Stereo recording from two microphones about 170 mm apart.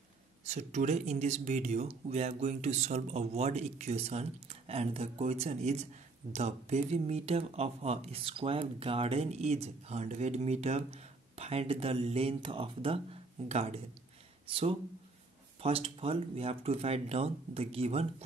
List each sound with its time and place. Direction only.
0.5 s speech: 45° right (ahead or behind)